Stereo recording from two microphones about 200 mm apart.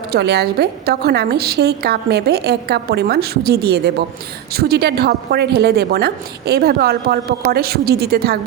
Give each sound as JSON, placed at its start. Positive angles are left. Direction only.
{"t": 0.1, "sound": "a woman's voice", "side_deg": -55}